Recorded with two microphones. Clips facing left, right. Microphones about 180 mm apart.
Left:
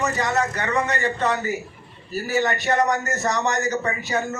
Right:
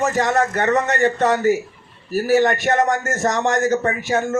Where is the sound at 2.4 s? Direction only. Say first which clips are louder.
Right 4 dB; 50° right (ahead or behind).